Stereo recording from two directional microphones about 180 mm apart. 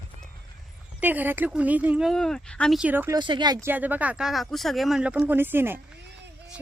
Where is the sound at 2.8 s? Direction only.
10° right (ahead or behind).